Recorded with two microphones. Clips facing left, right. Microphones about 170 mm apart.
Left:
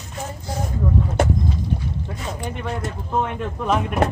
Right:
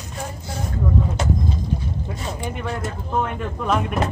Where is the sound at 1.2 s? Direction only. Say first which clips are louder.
Left 8 dB; 55° left (ahead or behind).